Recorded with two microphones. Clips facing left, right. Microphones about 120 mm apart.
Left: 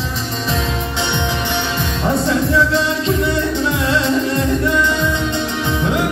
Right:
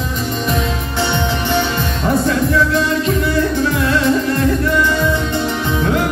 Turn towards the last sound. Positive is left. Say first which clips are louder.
# right 1 dB
turn(degrees=20)  # may be behind; listen again after turning